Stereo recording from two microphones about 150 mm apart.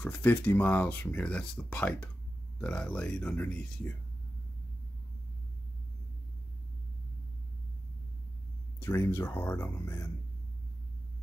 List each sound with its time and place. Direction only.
0.0 s speech: 10° left (ahead or behind)
8.7 s speech: 15° left (ahead or behind)